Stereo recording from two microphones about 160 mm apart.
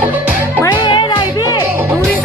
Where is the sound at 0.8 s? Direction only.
30° left (ahead or behind).